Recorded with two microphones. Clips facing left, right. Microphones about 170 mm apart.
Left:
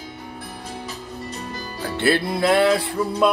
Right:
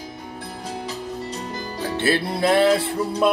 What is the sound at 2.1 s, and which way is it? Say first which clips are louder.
Music: left 1 dB; 25° right (ahead or behind).